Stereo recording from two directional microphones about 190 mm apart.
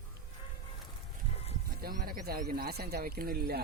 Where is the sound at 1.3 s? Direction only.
35° left (ahead or behind).